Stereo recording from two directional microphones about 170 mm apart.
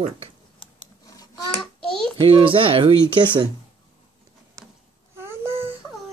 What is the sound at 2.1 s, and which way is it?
Speech, 30° right (ahead or behind).